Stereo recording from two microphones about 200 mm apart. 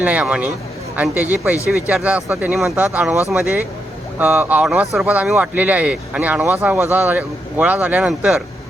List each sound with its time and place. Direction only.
0.0 s speech: 5° right (ahead or behind)